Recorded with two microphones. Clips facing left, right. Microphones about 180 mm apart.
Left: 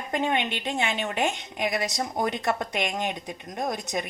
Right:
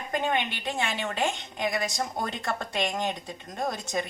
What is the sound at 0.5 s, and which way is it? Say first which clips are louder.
A woman's voice: left 3 dB; 20° left (ahead or behind).